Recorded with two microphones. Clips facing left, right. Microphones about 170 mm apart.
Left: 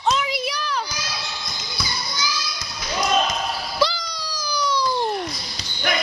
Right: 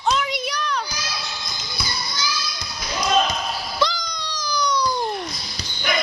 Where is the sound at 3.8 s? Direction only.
5° left (ahead or behind).